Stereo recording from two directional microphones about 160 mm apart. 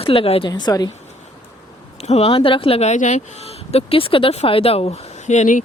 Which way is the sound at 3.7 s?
40° left (ahead or behind).